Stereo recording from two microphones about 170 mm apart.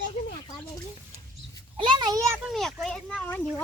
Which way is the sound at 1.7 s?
30° right (ahead or behind).